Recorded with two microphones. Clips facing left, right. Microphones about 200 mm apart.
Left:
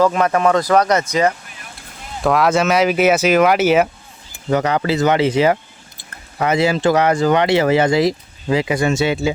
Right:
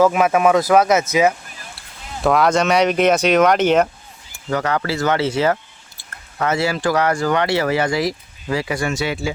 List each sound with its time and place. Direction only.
0.0 s speech: 5° right (ahead or behind)
4.4 s speech: 20° left (ahead or behind)